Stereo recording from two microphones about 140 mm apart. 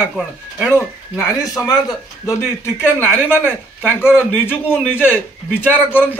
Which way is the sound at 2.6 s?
15° left (ahead or behind).